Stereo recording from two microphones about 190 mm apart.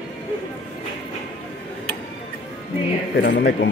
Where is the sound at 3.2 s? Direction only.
65° left (ahead or behind).